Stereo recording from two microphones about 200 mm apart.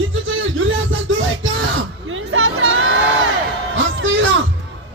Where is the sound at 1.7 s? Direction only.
80° right.